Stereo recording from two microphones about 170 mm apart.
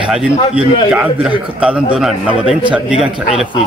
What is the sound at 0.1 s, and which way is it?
A man's voice, 5° right (ahead or behind).